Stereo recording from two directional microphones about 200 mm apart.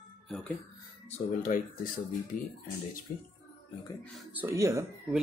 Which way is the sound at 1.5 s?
40° left (ahead or behind).